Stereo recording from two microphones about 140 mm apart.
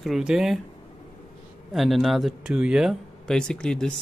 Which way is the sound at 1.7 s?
Centre (ahead or behind).